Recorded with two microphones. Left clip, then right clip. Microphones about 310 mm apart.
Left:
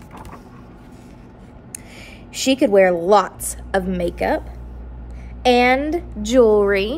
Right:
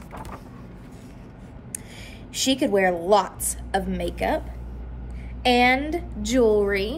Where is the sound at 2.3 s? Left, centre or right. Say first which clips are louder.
Left 7 dB; centre.